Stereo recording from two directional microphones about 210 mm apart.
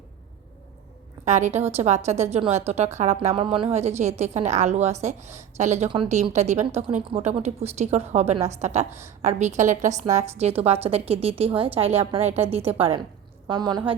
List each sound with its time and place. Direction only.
1.2 s a woman's voice: 35° right (ahead or behind)